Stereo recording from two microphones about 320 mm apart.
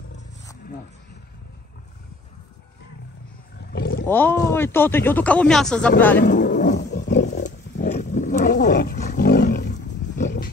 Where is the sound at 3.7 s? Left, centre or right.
Left.